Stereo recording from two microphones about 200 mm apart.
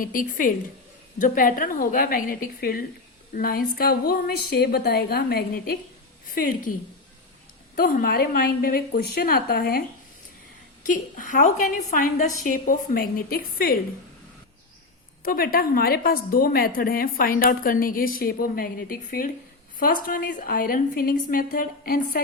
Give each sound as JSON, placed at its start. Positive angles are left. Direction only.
{"t": 0.0, "sound": "a woman's voice", "side_deg": 45}
{"t": 7.8, "sound": "a woman's voice", "side_deg": 45}
{"t": 10.8, "sound": "a woman's voice", "side_deg": 40}
{"t": 15.2, "sound": "a woman's voice", "side_deg": 45}